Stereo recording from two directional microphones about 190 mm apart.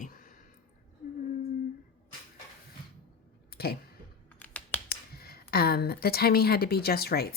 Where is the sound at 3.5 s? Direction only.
55° left (ahead or behind).